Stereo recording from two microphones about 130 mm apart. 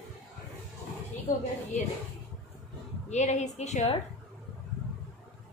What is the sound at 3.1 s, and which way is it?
Speech, 65° left (ahead or behind).